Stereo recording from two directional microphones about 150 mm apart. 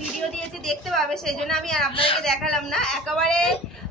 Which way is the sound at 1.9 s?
35° left (ahead or behind).